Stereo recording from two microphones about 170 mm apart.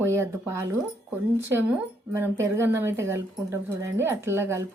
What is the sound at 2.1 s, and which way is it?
Speech, 15° right (ahead or behind).